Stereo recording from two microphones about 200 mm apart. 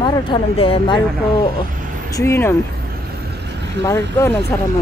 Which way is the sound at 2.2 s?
15° left (ahead or behind).